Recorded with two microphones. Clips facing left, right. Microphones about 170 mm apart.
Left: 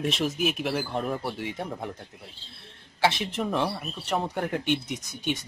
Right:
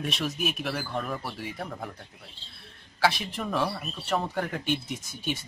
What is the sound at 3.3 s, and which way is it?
A man's voice, 20° left (ahead or behind).